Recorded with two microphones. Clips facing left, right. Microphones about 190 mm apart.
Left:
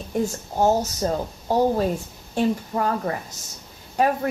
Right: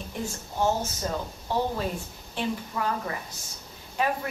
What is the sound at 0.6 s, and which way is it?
Speech, 40° left (ahead or behind).